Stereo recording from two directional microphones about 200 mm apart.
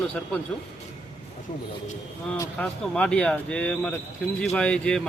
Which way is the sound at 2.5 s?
5° left (ahead or behind).